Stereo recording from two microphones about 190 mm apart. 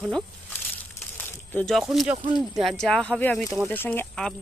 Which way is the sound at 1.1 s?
10° left (ahead or behind).